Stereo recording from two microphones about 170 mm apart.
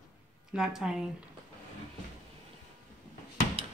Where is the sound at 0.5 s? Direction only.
5° right (ahead or behind).